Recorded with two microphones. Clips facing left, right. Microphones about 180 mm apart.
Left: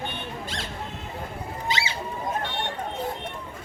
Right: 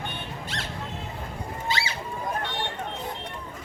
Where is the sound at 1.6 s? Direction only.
20° left (ahead or behind).